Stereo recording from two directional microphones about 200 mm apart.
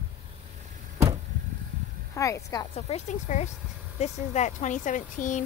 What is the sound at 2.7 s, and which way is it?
A woman's voice, 35° left (ahead or behind).